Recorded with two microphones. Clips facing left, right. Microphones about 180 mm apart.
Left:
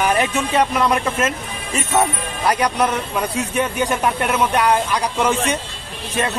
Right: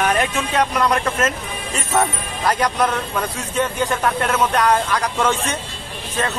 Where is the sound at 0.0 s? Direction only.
5° left (ahead or behind).